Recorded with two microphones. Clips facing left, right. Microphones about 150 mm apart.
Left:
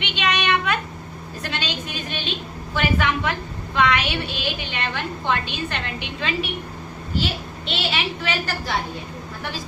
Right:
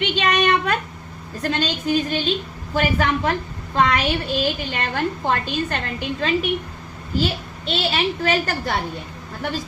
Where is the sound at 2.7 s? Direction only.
40° right (ahead or behind).